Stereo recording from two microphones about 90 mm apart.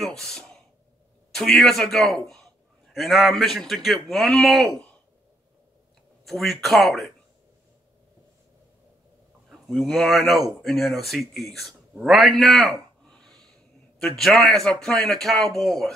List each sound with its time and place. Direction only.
0.0 s a man's voice: 5° left (ahead or behind)
6.2 s a man's voice: centre (ahead or behind)
9.5 s a man's voice: centre (ahead or behind)
12.0 s a sound: centre (ahead or behind)
13.9 s a man's voice: 5° left (ahead or behind)